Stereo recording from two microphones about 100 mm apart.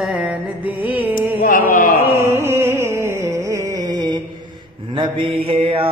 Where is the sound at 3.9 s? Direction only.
50° right (ahead or behind).